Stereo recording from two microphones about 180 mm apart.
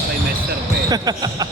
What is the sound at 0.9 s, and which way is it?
Speech, 20° right (ahead or behind).